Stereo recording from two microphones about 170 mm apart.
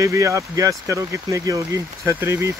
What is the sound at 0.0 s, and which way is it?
Speech, 15° right (ahead or behind).